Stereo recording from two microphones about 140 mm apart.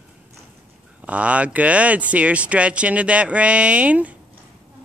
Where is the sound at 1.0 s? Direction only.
10° right (ahead or behind).